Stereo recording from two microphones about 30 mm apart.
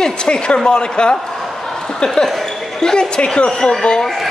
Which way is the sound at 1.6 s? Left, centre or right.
Left.